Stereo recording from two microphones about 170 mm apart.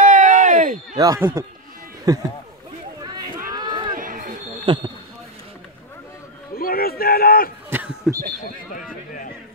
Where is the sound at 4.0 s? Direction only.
55° right (ahead or behind).